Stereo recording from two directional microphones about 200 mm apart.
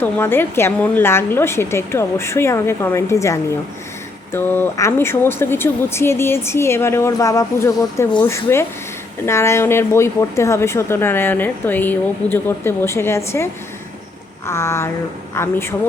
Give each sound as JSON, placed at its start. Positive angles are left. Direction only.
{"t": 0.0, "sound": "speech", "side_deg": 10}